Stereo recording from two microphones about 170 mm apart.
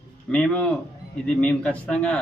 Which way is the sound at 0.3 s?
5° left (ahead or behind).